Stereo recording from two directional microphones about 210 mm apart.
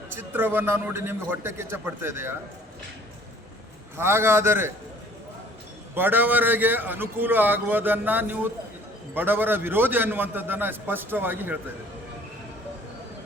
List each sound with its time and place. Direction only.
0.2 s a man's voice: 10° right (ahead or behind)
3.9 s a man's voice: 10° right (ahead or behind)
5.9 s a man's voice: 10° right (ahead or behind)